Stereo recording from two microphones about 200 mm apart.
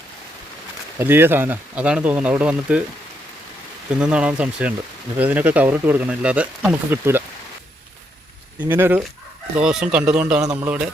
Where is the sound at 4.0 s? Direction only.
5° right (ahead or behind).